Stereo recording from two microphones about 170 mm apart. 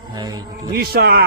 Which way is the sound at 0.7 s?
65° right (ahead or behind).